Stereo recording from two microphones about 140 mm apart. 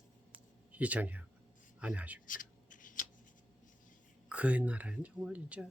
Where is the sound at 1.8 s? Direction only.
10° right (ahead or behind).